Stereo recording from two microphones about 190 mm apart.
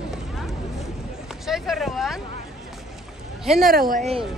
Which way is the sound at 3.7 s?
50° right (ahead or behind).